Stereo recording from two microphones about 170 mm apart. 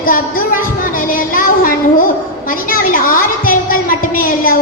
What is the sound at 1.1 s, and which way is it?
Child singing, 55° left (ahead or behind).